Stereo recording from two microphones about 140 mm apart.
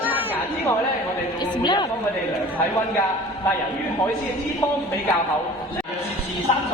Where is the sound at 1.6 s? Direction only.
35° left (ahead or behind).